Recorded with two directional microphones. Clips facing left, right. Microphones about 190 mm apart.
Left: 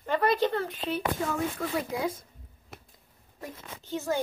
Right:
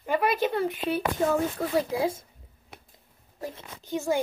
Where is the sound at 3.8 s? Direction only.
15° right (ahead or behind).